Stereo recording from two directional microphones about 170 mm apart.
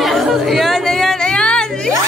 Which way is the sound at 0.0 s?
Centre (ahead or behind).